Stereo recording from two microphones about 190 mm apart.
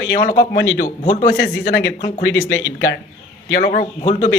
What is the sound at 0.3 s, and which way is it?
A man's voice, 55° left (ahead or behind).